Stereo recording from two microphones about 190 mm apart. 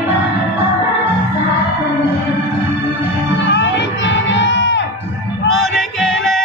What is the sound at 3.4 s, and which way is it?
Music, 65° left (ahead or behind).